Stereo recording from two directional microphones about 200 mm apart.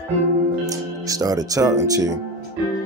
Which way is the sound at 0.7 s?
15° right (ahead or behind).